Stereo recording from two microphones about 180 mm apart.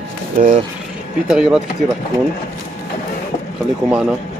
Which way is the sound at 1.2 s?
Centre (ahead or behind).